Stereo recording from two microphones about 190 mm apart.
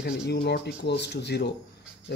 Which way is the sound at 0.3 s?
60° left (ahead or behind).